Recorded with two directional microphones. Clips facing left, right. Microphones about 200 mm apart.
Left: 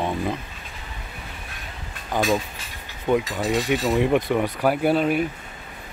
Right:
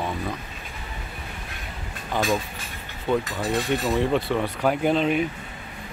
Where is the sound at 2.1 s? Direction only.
15° left (ahead or behind).